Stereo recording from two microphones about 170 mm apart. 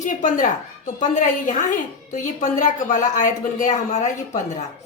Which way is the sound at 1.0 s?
50° left (ahead or behind).